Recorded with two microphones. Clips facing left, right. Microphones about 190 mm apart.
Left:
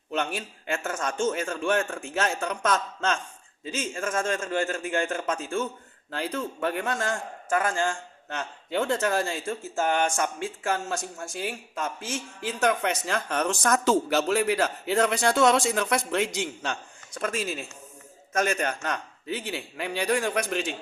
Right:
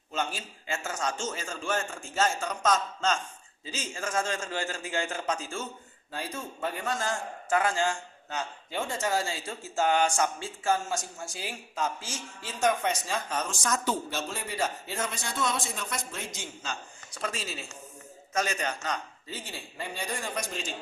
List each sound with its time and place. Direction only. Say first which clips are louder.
0.1 s a man's voice: left 4 dB; 65° left (ahead or behind)
17.2 s a man's voice: left 6 dB; 55° left (ahead or behind)